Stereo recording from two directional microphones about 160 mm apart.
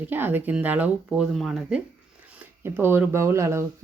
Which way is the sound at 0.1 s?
10° right (ahead or behind).